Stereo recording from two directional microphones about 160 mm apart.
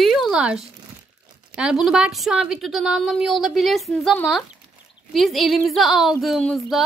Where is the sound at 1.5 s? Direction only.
5° right (ahead or behind).